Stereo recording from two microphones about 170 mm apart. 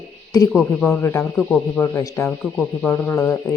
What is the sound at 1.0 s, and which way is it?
Speech, 15° left (ahead or behind).